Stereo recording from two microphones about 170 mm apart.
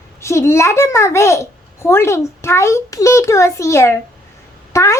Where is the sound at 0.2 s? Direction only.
15° left (ahead or behind).